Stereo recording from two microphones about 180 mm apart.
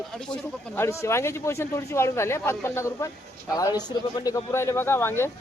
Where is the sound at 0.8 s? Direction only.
15° left (ahead or behind).